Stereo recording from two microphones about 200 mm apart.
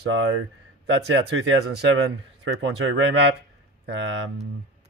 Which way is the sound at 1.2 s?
80° right.